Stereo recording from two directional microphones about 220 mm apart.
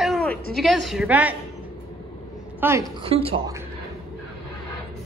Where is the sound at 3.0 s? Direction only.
25° right (ahead or behind).